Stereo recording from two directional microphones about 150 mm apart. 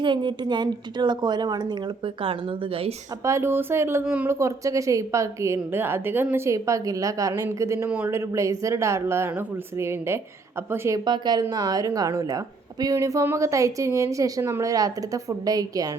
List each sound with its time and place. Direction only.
0.0 s a woman's voice: 30° right (ahead or behind)
3.2 s speech: 20° right (ahead or behind)
4.4 s a woman's voice: 20° right (ahead or behind)